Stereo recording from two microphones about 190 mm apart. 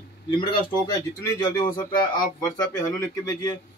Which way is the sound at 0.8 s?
20° left (ahead or behind).